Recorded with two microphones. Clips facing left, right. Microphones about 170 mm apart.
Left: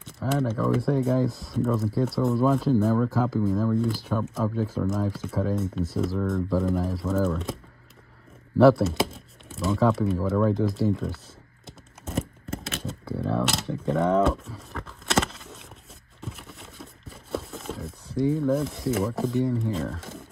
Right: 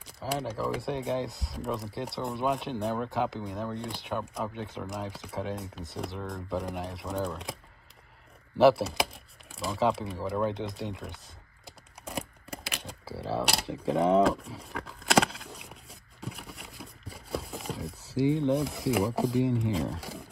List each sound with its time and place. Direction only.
0.3 s speech: centre (ahead or behind)
8.6 s speech: centre (ahead or behind)
12.1 s a sound: centre (ahead or behind)
13.4 s speech: centre (ahead or behind)
13.9 s speech: 30° right (ahead or behind)
14.2 s a sound: centre (ahead or behind)
18.5 s speech: centre (ahead or behind)